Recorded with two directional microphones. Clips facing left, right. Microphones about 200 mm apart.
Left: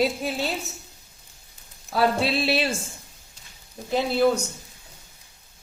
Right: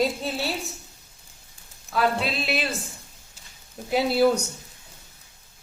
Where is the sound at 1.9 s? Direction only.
30° left (ahead or behind).